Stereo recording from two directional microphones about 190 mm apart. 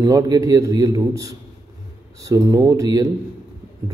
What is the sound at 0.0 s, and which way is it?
A man's voice, 20° right (ahead or behind).